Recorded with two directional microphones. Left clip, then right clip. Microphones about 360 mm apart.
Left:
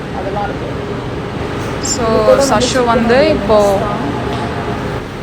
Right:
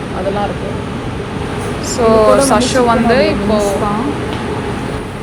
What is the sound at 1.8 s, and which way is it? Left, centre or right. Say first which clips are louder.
Speech: right 2 dB; centre.